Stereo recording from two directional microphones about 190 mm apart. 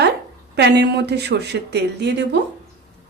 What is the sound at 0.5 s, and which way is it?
Speech, 60° right (ahead or behind).